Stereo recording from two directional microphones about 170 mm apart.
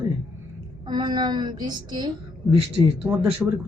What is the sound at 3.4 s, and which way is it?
Speech, 5° right (ahead or behind).